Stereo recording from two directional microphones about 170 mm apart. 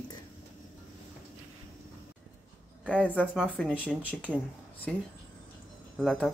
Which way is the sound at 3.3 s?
Centre (ahead or behind).